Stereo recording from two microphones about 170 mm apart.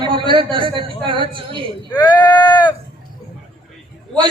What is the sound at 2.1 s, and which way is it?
Speech, 10° left (ahead or behind).